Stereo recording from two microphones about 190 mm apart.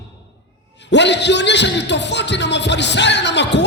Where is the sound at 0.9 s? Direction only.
65° left (ahead or behind).